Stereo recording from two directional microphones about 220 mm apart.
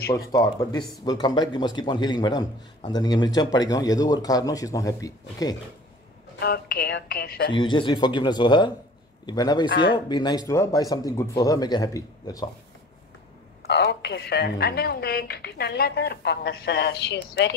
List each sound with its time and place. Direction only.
0.3 s speech: 15° left (ahead or behind)
6.4 s a woman's voice: 45° left (ahead or behind)
7.5 s a man's voice: 20° left (ahead or behind)
9.7 s a woman's voice: 45° left (ahead or behind)
9.9 s speech: 20° left (ahead or behind)
13.6 s a woman's voice: 50° left (ahead or behind)